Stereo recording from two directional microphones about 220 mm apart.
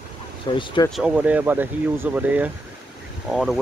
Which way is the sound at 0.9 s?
5° right (ahead or behind).